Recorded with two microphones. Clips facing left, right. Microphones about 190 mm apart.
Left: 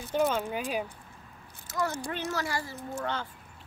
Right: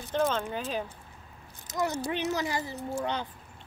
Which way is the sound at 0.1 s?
10° left (ahead or behind).